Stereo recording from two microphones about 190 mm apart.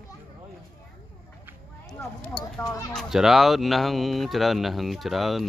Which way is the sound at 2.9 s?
Centre (ahead or behind).